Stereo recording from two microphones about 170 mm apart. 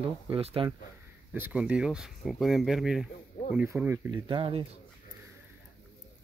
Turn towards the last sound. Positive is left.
turn(degrees=-30)  # may be behind; listen again after turning